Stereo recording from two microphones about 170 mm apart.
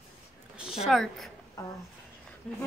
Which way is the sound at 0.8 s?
Centre (ahead or behind).